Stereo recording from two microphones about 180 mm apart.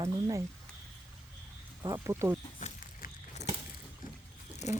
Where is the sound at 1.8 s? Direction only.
20° right (ahead or behind).